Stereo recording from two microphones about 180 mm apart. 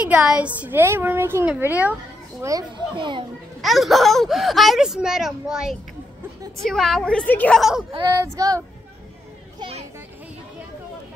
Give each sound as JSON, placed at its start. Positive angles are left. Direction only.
{"t": 0.0, "sound": "a woman's voice", "side_deg": -5}
{"t": 2.4, "sound": "speech", "side_deg": -20}
{"t": 3.6, "sound": "speech", "side_deg": 0}
{"t": 8.1, "sound": "a woman's voice", "side_deg": -20}
{"t": 9.6, "sound": "children playing", "side_deg": -30}